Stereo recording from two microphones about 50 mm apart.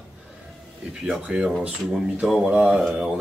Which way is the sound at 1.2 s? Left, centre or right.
Right.